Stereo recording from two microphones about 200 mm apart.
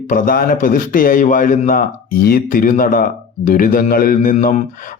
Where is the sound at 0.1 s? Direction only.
45° left (ahead or behind).